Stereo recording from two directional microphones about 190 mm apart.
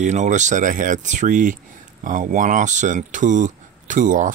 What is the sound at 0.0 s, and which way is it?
Speech, 40° right (ahead or behind).